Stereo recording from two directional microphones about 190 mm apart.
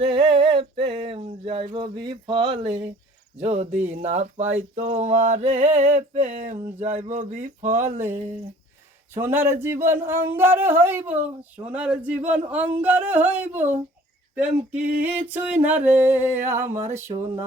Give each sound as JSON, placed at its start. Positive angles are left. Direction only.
{"t": 0.0, "sound": "a sound", "side_deg": -30}
{"t": 9.1, "sound": "speech", "side_deg": -10}
{"t": 14.7, "sound": "speech", "side_deg": -10}